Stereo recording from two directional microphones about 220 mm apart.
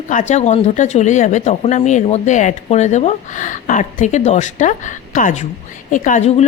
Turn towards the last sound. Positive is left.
turn(degrees=30)  # may be behind; listen again after turning